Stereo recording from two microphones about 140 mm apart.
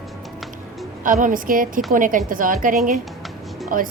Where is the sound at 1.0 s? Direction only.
70° right (ahead or behind).